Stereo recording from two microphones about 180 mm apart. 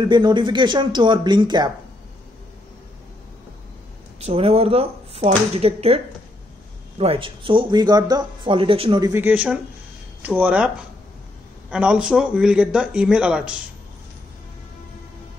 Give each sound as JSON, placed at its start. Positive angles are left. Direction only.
{"t": 0.0, "sound": "speech", "side_deg": -25}
{"t": 4.2, "sound": "speech", "side_deg": -35}
{"t": 7.0, "sound": "speech", "side_deg": -30}
{"t": 9.1, "sound": "speech", "side_deg": -10}
{"t": 11.7, "sound": "speech", "side_deg": -5}